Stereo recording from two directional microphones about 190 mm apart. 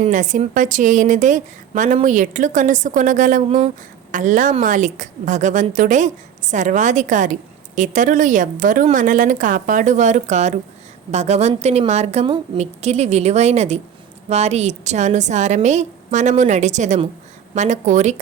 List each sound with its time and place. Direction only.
0.0 s a woman's voice: 40° right (ahead or behind)